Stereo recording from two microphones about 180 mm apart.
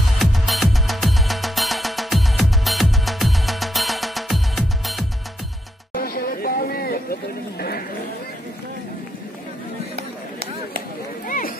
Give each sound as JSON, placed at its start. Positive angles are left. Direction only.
{"t": 0.2, "sound": "music", "side_deg": 0}
{"t": 5.9, "sound": "chatter", "side_deg": 55}
{"t": 11.2, "sound": "a sound", "side_deg": 50}